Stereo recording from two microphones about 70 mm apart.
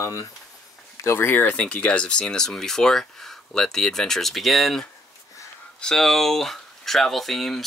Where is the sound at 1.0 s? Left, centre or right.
Left.